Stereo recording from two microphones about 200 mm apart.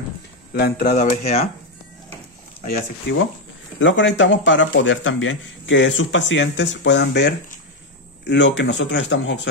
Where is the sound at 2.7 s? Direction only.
55° left (ahead or behind).